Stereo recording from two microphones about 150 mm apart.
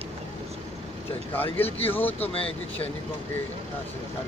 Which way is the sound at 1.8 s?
15° left (ahead or behind).